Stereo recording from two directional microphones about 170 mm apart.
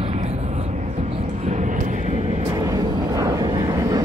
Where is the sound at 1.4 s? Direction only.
45° right (ahead or behind).